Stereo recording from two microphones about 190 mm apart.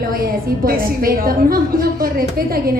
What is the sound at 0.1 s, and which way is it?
A woman's voice, 50° right (ahead or behind).